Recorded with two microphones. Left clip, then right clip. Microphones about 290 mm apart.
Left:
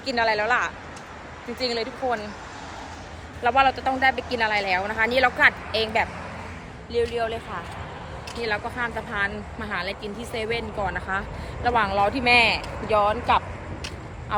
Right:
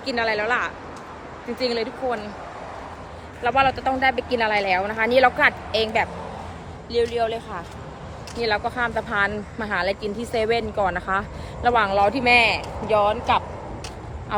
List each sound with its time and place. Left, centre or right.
0.0 s a woman's voice: centre
3.4 s a woman's voice: centre